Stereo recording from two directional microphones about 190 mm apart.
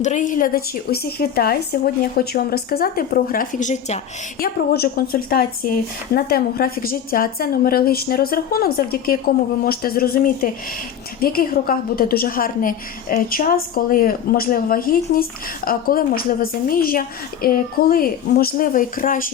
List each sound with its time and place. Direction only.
0.0 s speech: 40° left (ahead or behind)
4.4 s speech: 50° left (ahead or behind)